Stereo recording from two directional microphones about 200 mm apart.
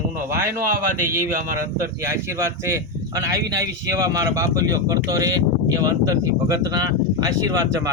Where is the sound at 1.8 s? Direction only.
15° right (ahead or behind).